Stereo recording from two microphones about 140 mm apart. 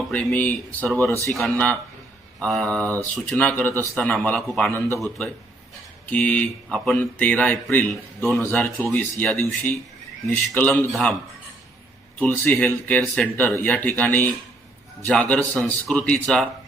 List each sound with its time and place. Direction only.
0.1 s a man's voice: 10° left (ahead or behind)
2.8 s speech: 20° right (ahead or behind)
3.2 s a man's voice: 10° left (ahead or behind)
6.1 s a man's voice: 10° left (ahead or behind)
12.2 s a man's voice: 10° left (ahead or behind)